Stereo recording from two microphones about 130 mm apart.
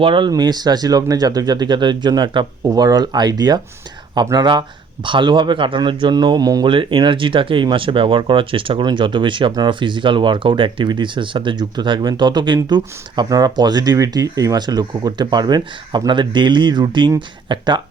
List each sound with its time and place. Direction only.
0.0 s speech: 40° right (ahead or behind)
6.7 s speech: 40° right (ahead or behind)